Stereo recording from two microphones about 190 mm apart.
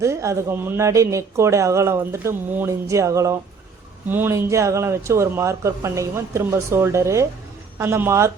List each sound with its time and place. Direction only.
0.0 s speech: 15° right (ahead or behind)